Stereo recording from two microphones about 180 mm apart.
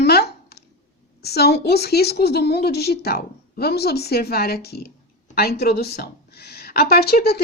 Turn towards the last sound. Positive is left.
turn(degrees=60)  # may be behind; listen again after turning